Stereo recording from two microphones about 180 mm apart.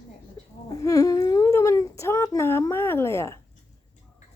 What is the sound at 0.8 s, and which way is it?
Humming, 20° left (ahead or behind).